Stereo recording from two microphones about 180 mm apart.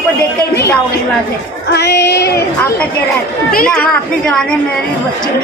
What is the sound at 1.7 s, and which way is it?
Speech, 70° left (ahead or behind).